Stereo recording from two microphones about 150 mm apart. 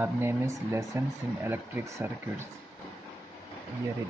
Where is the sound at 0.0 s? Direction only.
15° right (ahead or behind).